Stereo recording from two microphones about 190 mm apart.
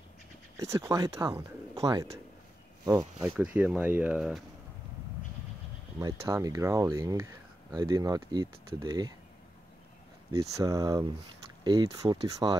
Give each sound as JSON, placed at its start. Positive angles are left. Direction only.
{"t": 0.6, "sound": "speech", "side_deg": -15}
{"t": 2.8, "sound": "speech", "side_deg": -20}
{"t": 3.3, "sound": "speech", "side_deg": -10}
{"t": 5.9, "sound": "speech", "side_deg": -15}
{"t": 10.5, "sound": "speech", "side_deg": -20}